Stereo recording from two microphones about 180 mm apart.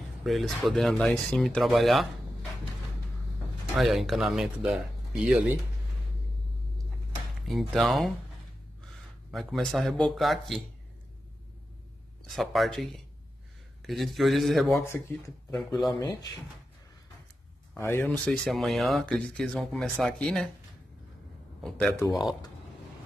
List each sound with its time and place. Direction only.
0.2 s speech: centre (ahead or behind)
3.7 s speech: centre (ahead or behind)
7.4 s speech: centre (ahead or behind)
9.3 s speech: centre (ahead or behind)
12.3 s speech: centre (ahead or behind)
14.8 s speech: 15° left (ahead or behind)
15.5 s speech: centre (ahead or behind)
15.9 s speech: 20° left (ahead or behind)
17.7 s speech: 10° left (ahead or behind)
21.5 s speech: 5° left (ahead or behind)